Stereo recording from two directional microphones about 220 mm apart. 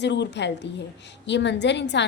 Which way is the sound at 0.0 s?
50° left (ahead or behind).